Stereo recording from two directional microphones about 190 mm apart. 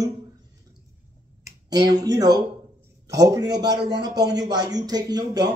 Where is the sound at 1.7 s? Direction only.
20° right (ahead or behind).